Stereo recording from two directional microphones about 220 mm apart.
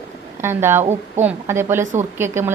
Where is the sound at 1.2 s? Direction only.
10° right (ahead or behind).